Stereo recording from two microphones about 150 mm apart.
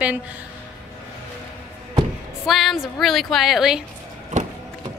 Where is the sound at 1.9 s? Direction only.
Centre (ahead or behind).